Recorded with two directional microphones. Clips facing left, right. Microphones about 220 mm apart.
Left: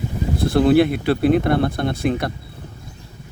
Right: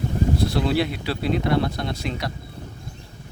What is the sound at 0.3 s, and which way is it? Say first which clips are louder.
Speech: left 11 dB; 50° left (ahead or behind).